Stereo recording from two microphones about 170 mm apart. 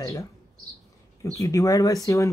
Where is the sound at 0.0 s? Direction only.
20° left (ahead or behind).